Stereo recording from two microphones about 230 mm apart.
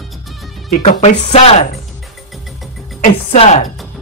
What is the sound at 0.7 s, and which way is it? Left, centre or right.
Speech, left.